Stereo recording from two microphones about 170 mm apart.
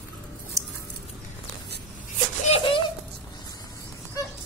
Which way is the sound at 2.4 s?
40° left (ahead or behind).